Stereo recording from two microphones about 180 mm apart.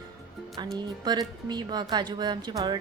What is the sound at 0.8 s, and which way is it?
Speech, 25° right (ahead or behind).